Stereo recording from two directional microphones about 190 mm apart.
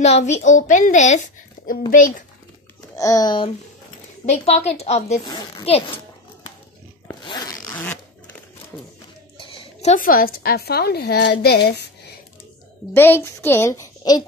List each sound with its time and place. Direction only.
0.0 s a child's voice: 35° left (ahead or behind)
3.0 s speech: 20° left (ahead or behind)
4.3 s a child's voice: 35° left (ahead or behind)
7.2 s zipper: 20° left (ahead or behind)
9.4 s a woman's voice: 30° left (ahead or behind); by 11.9 s 60° left (ahead or behind)
12.9 s a woman's voice: 10° left (ahead or behind)